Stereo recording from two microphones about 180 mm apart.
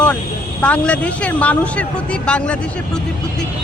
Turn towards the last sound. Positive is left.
turn(degrees=5)  # may be behind; listen again after turning